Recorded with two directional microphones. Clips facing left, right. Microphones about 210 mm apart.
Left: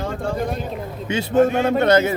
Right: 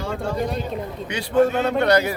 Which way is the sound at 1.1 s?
25° left (ahead or behind).